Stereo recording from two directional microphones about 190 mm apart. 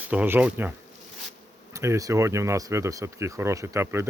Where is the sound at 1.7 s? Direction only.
15° right (ahead or behind).